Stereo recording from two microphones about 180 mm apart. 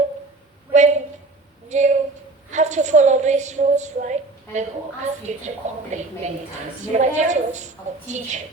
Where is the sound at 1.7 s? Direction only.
40° right (ahead or behind).